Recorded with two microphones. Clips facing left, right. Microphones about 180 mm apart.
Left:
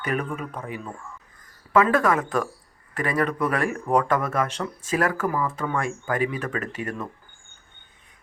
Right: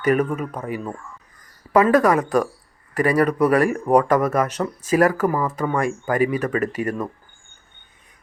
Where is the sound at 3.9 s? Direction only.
40° right (ahead or behind).